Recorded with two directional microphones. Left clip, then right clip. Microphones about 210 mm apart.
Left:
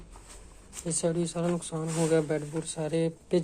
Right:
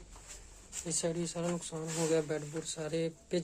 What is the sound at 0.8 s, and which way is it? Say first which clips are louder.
Speech: left 6 dB; 10° left (ahead or behind).